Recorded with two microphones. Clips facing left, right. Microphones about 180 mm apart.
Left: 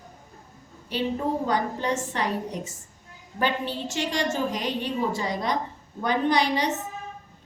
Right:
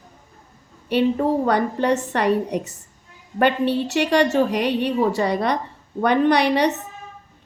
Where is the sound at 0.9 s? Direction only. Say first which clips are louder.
Right 8 dB; 65° right (ahead or behind).